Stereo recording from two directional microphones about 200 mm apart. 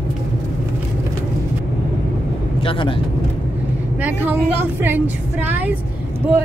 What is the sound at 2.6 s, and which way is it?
Speech, 25° left (ahead or behind).